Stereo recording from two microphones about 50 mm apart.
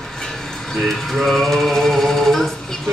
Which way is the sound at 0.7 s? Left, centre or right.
Centre.